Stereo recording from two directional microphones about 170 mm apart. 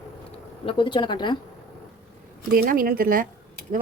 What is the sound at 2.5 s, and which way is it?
Speech, 60° right (ahead or behind).